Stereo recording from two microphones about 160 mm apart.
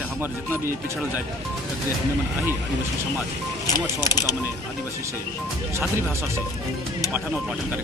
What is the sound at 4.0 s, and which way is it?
Speech, 25° left (ahead or behind).